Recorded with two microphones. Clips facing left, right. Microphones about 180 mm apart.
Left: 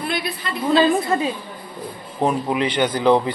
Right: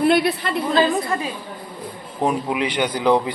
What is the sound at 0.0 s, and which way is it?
Speech, 70° right (ahead or behind).